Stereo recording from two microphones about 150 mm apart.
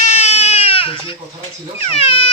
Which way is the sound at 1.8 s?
40° left (ahead or behind).